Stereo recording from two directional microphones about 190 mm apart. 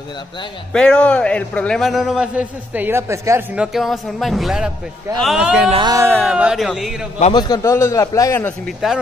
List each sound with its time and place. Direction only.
0.7 s a man's voice: 5° left (ahead or behind)
5.7 s a man's voice: 20° right (ahead or behind); by 7.1 s centre (ahead or behind)
7.3 s a man's voice: 20° left (ahead or behind)